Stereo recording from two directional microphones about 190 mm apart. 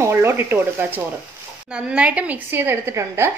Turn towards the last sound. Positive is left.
turn(degrees=-15)  # may be behind; listen again after turning